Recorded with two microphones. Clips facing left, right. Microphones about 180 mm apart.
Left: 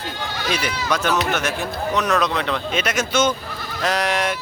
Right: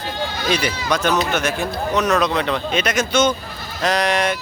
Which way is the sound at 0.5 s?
5° left (ahead or behind).